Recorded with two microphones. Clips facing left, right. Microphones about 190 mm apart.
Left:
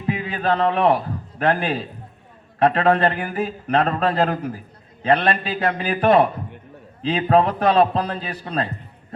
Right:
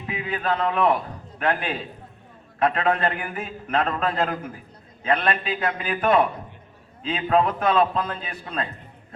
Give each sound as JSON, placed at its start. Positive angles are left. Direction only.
{"t": 0.1, "sound": "a man's voice", "side_deg": 35}